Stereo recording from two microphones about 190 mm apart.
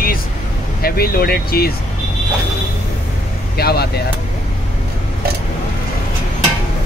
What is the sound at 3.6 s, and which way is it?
Speech, 55° left (ahead or behind).